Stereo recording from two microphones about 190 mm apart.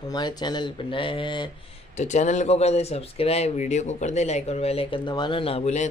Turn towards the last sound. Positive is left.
turn(degrees=35)  # may be behind; listen again after turning